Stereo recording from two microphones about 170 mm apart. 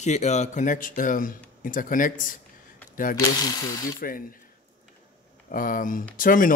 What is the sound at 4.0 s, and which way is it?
Speech, 55° left (ahead or behind).